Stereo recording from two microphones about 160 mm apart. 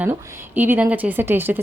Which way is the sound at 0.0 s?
10° right (ahead or behind).